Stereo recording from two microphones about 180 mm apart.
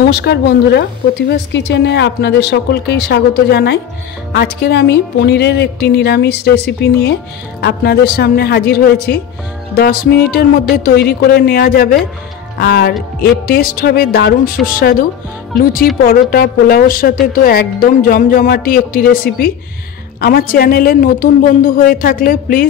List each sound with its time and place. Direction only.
0.1 s a woman's voice: 70° left (ahead or behind); by 22.7 s 50° left (ahead or behind)